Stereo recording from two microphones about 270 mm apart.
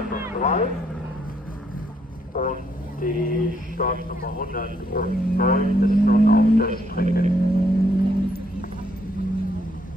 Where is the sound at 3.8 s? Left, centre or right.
Left.